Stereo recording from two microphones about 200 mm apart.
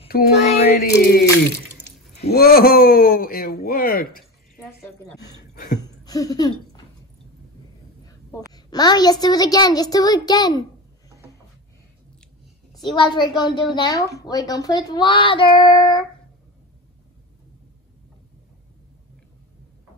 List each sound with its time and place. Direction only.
0.4 s child singing: 35° left (ahead or behind)
0.7 s speech: 50° left (ahead or behind)
2.2 s speech: 50° left (ahead or behind)
5.1 s a woman's voice: 20° left (ahead or behind)
5.5 s a sound: 40° left (ahead or behind)
5.8 s a sound: 20° left (ahead or behind)
8.1 s a woman's voice: 20° left (ahead or behind)
12.7 s a woman's voice: 25° left (ahead or behind)